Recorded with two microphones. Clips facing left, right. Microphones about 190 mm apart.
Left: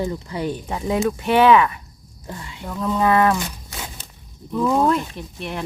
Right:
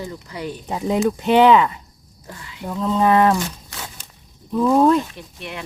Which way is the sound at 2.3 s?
25° left (ahead or behind).